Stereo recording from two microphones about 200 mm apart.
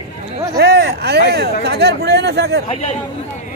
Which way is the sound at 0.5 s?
55° right (ahead or behind).